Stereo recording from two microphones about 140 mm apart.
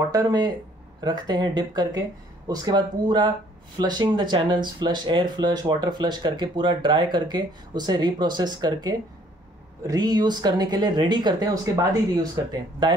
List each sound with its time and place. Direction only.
0.1 s speech: 30° right (ahead or behind)